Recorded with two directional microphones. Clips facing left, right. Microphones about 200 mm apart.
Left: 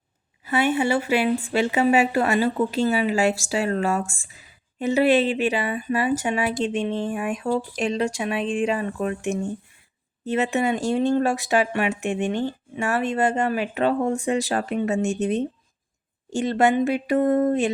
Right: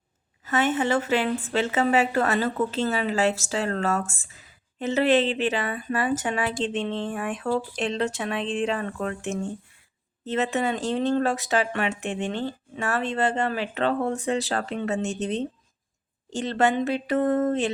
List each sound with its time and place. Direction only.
0.4 s a woman's voice: 10° left (ahead or behind)